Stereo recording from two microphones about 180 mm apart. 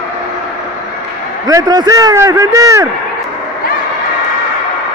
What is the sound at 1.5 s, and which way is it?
A man's voice, 25° right (ahead or behind).